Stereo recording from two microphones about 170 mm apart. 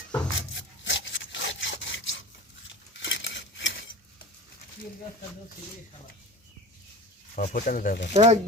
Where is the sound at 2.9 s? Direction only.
90° left.